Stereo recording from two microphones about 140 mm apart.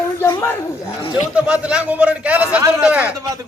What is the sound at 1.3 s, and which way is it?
A man's voice, 10° right (ahead or behind).